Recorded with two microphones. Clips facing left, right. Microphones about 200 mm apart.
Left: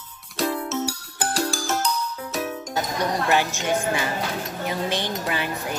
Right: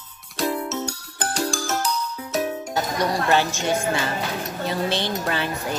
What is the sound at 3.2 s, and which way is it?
Speech, 15° left (ahead or behind).